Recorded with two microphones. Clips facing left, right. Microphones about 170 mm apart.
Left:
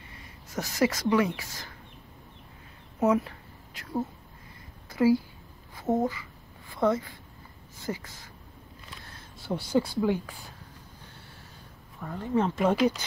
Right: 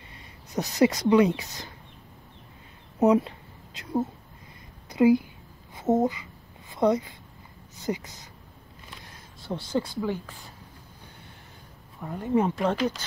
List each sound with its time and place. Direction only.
0.5 s speech: 20° right (ahead or behind)
3.0 s a sound: 20° right (ahead or behind)
5.8 s speech: 20° right (ahead or behind)
9.5 s speech: 10° left (ahead or behind)
12.0 s speech: 15° right (ahead or behind)
12.5 s speech: 10° left (ahead or behind)